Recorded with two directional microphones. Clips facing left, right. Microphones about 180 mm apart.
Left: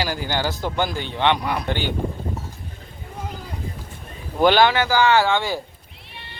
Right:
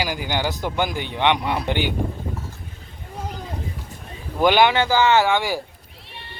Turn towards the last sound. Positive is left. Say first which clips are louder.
# even
turn(degrees=-15)  # may be behind; listen again after turning